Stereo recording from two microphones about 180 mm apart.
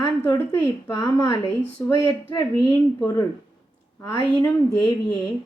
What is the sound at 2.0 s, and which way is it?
Speech, 20° left (ahead or behind).